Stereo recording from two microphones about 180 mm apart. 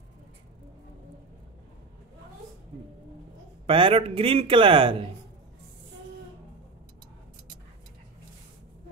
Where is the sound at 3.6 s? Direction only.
30° right (ahead or behind).